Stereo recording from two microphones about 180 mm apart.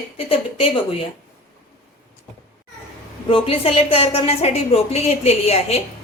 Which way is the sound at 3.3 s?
30° left (ahead or behind).